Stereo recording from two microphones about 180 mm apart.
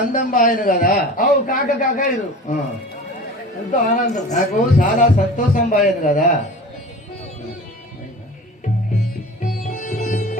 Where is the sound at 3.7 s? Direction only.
45° left (ahead or behind).